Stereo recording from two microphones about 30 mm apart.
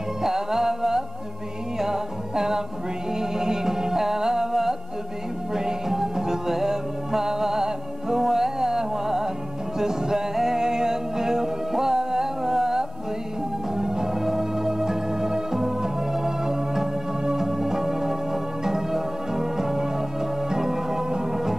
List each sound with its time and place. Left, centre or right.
0.2 s music: centre